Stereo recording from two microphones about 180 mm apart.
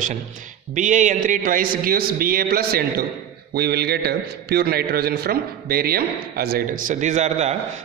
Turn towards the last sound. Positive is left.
turn(degrees=-40)  # may be behind; listen again after turning